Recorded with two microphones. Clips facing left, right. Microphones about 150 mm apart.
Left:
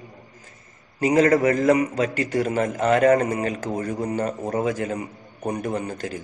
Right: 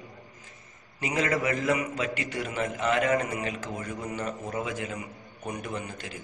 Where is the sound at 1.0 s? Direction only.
40° left (ahead or behind).